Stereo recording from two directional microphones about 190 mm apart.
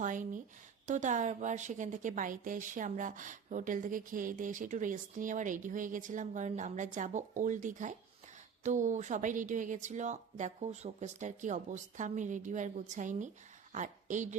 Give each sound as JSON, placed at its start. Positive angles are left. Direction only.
{"t": 0.0, "sound": "a woman's voice", "side_deg": -45}